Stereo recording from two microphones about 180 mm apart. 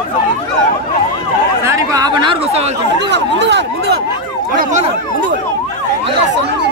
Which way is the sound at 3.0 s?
70° right (ahead or behind).